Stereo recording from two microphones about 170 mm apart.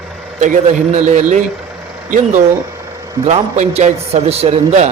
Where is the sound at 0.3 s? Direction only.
45° right (ahead or behind).